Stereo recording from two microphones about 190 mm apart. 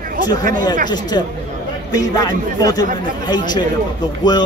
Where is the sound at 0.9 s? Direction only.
20° left (ahead or behind).